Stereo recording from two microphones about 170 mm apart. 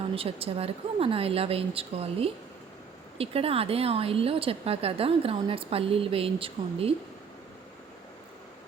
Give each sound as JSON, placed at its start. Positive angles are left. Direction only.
{"t": 0.1, "sound": "a woman's voice", "side_deg": -35}